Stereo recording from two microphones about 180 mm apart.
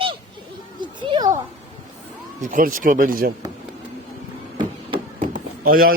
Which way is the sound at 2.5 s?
50° right (ahead or behind).